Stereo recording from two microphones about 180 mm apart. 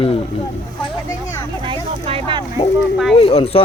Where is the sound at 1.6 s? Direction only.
30° right (ahead or behind).